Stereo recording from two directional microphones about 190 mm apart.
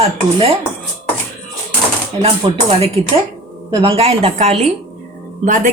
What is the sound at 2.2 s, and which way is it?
Speech, 30° right (ahead or behind).